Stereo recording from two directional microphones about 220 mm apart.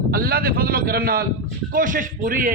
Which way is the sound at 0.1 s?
40° right (ahead or behind).